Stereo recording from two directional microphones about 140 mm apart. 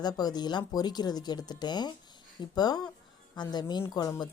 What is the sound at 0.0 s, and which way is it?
Speech, 30° left (ahead or behind).